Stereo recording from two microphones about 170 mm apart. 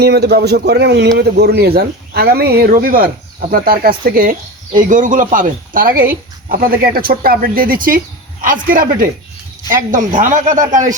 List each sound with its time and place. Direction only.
0.0 s a man's voice: 75° right (ahead or behind); by 10.8 s 45° right (ahead or behind)